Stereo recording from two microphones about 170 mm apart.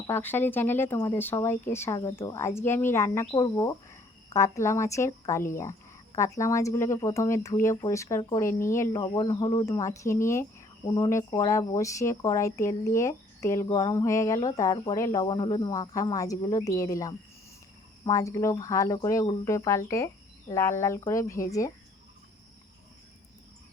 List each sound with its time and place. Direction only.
0.1 s speech: 10° left (ahead or behind)